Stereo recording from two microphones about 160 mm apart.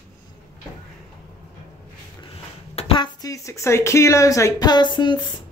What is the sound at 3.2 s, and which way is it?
Speech, 20° left (ahead or behind).